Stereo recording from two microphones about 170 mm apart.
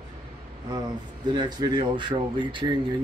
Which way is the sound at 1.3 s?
25° right (ahead or behind).